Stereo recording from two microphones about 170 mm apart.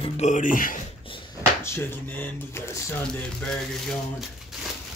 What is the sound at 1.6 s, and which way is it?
Speech, 15° left (ahead or behind).